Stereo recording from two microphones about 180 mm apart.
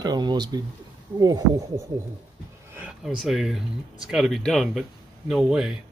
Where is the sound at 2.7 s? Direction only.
10° right (ahead or behind).